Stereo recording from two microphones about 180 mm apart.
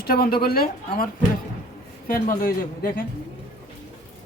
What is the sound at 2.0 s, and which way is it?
Speech, 50° left (ahead or behind).